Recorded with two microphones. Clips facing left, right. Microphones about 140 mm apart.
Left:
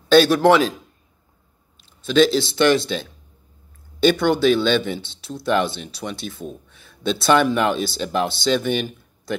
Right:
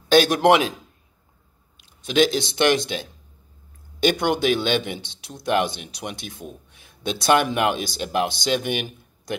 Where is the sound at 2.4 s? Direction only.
15° right (ahead or behind).